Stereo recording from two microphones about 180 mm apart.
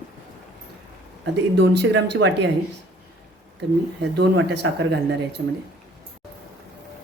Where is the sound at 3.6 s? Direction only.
75° right (ahead or behind).